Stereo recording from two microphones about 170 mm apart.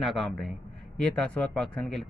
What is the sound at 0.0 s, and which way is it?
A man's voice, centre (ahead or behind).